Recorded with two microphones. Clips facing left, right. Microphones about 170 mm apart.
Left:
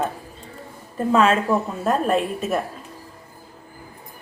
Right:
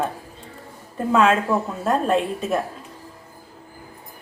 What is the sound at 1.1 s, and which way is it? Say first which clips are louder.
Speech: even; centre (ahead or behind).